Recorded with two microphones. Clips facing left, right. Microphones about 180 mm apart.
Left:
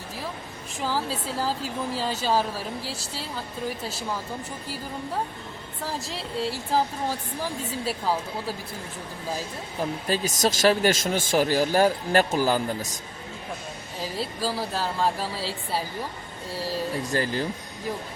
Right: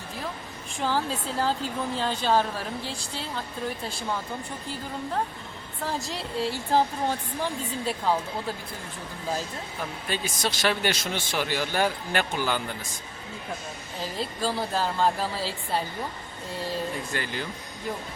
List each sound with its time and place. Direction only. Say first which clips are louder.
0.8 s speech: right 1 dB; 5° left (ahead or behind)
5.8 s speech: right 1 dB; centre (ahead or behind)
10.1 s speech: left 5 dB; 40° left (ahead or behind)
14.0 s speech: even; 5° left (ahead or behind)
17.1 s speech: left 6 dB; 35° left (ahead or behind)